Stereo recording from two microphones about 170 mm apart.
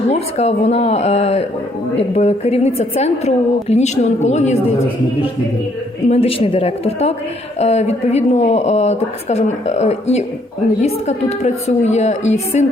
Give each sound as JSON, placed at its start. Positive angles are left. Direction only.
{"t": 0.1, "sound": "speech", "side_deg": 40}
{"t": 6.0, "sound": "speech", "side_deg": 40}